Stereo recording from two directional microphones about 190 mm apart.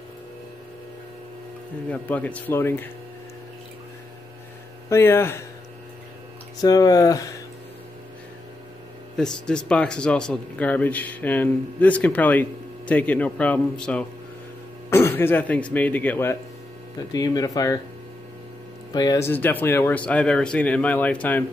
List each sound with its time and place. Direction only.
1.9 s speech: 10° left (ahead or behind)
4.8 s speech: 15° left (ahead or behind)
6.6 s speech: 20° left (ahead or behind)
9.1 s speech: 5° left (ahead or behind); by 17.7 s 20° left (ahead or behind)
18.9 s speech: 20° left (ahead or behind)